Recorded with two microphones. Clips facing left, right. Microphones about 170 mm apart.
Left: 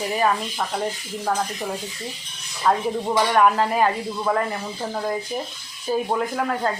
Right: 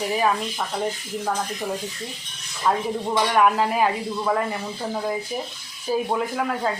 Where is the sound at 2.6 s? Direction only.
5° right (ahead or behind).